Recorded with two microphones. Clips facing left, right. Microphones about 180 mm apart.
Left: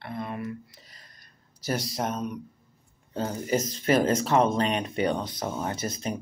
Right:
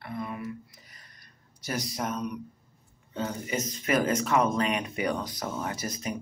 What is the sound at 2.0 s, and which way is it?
Speech, 30° left (ahead or behind).